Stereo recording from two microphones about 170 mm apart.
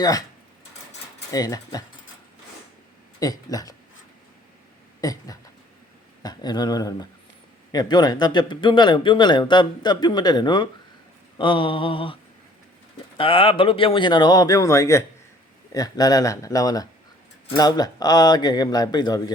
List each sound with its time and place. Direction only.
0.0 s a man's voice: 20° left (ahead or behind)
1.3 s a man's voice: 20° left (ahead or behind)
3.2 s a man's voice: 20° left (ahead or behind)
4.9 s a man's voice: 20° left (ahead or behind)
13.1 s a man's voice: 30° left (ahead or behind)